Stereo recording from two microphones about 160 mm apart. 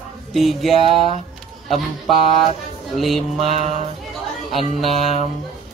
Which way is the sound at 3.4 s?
45° right (ahead or behind).